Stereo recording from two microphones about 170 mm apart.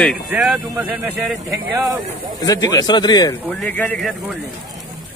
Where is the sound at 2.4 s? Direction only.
20° left (ahead or behind).